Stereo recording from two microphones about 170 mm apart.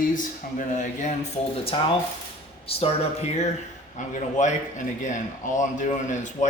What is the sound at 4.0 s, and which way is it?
Speech, 45° left (ahead or behind).